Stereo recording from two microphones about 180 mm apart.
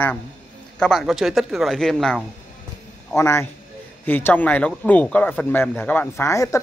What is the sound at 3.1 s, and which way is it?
Speech, 15° left (ahead or behind).